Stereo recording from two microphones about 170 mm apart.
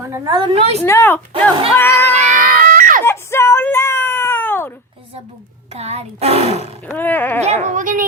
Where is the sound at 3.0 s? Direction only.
15° left (ahead or behind).